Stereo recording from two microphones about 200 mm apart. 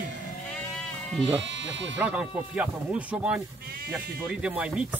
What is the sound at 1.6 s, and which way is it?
Speech, 65° right (ahead or behind).